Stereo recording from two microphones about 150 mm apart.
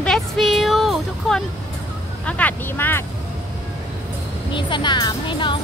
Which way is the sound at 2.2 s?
10° left (ahead or behind).